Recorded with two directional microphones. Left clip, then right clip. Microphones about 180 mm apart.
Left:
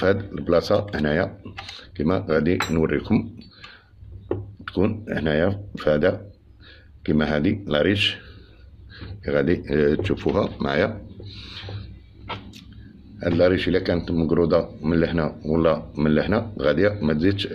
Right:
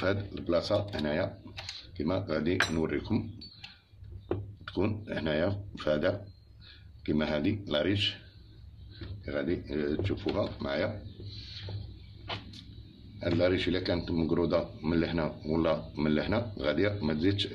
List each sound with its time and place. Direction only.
0.4 s speech: 35° left (ahead or behind)
4.6 s speech: 30° left (ahead or behind)
9.2 s speech: 55° left (ahead or behind)
11.4 s a sound: 50° left (ahead or behind)
13.2 s speech: 25° left (ahead or behind)